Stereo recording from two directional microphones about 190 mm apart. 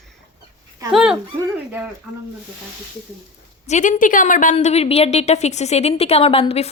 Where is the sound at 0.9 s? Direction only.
5° right (ahead or behind).